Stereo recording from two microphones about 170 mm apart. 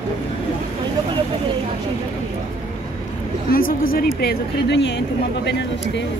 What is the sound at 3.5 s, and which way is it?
A woman's voice, 55° left (ahead or behind).